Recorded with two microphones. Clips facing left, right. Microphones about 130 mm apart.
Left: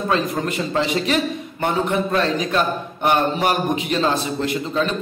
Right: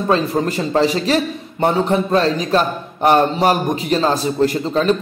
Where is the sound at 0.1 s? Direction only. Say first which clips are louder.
Right 5 dB; 35° right (ahead or behind).